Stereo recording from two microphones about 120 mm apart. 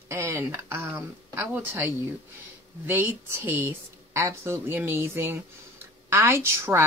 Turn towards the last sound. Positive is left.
turn(degrees=-20)  # may be behind; listen again after turning